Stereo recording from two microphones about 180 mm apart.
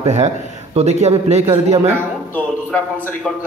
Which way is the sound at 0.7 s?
40° right (ahead or behind).